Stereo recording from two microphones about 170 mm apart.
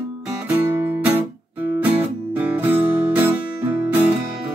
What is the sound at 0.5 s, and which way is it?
Music, 15° right (ahead or behind).